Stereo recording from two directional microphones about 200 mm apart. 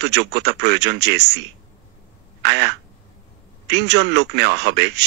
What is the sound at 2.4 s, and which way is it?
Quack, 60° right (ahead or behind).